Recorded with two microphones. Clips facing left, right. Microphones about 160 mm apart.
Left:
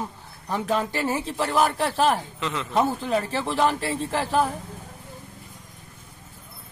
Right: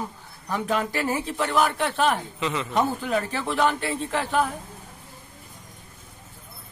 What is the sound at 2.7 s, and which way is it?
Speech, 30° left (ahead or behind).